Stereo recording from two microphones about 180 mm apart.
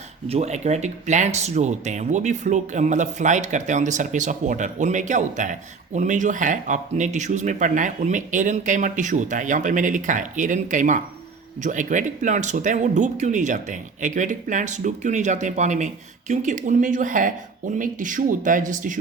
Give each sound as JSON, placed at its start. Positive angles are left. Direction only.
{"t": 0.3, "sound": "speech", "side_deg": -40}